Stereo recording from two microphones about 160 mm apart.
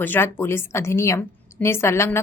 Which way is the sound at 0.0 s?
15° left (ahead or behind).